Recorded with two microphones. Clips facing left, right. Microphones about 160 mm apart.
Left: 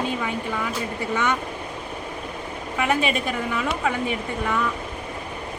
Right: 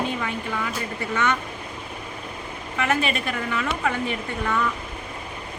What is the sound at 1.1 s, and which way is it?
Speech, 15° left (ahead or behind).